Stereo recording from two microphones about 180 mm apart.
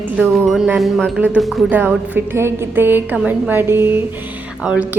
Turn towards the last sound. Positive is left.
turn(degrees=-5)  # may be behind; listen again after turning